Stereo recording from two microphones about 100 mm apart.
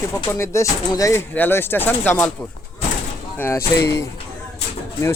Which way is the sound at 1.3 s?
20° left (ahead or behind).